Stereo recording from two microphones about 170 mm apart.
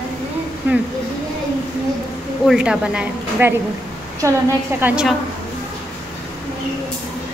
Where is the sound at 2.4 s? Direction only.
5° right (ahead or behind).